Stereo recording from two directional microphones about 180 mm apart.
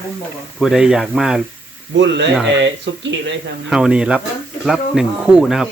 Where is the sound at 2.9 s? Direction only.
90° right.